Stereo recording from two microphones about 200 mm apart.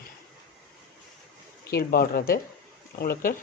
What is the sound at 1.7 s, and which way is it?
A woman's voice, 50° left (ahead or behind).